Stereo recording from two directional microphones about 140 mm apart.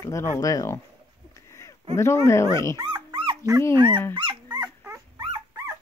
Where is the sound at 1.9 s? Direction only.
20° left (ahead or behind).